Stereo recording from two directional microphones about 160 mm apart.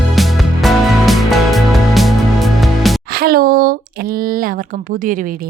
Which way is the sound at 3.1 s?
70° right (ahead or behind).